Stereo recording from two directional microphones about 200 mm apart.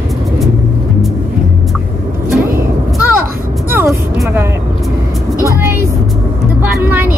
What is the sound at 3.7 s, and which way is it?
Vehicle, 10° right (ahead or behind).